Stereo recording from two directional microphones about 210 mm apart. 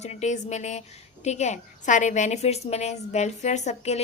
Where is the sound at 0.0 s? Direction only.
30° left (ahead or behind).